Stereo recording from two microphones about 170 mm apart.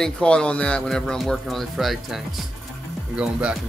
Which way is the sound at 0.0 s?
5° left (ahead or behind).